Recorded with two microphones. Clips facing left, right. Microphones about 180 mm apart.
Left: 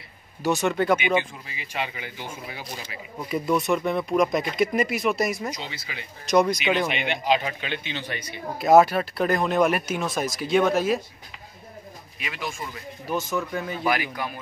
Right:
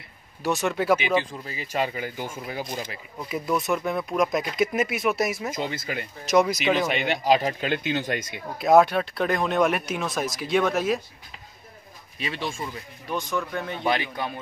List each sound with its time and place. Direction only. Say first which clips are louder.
0.4 s speech: left 2 dB; centre (ahead or behind)
1.4 s speech: right 5 dB; 40° right (ahead or behind)
3.3 s speech: left 2 dB; centre (ahead or behind)
5.5 s speech: right 6 dB; 50° right (ahead or behind)
6.2 s speech: even; 5° right (ahead or behind)
6.9 s speech: right 2 dB; 45° right (ahead or behind)
8.5 s speech: left 1 dB; centre (ahead or behind)
12.2 s a man's voice: right 3 dB; 30° right (ahead or behind)
13.1 s speech: left 1 dB; 5° left (ahead or behind)
13.8 s a man's voice: right 1 dB; 25° right (ahead or behind)